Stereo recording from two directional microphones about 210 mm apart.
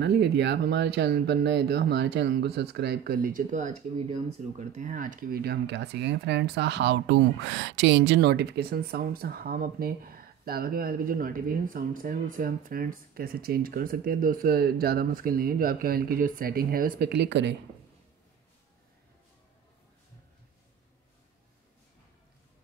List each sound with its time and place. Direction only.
0.0 s speech: 55° right (ahead or behind)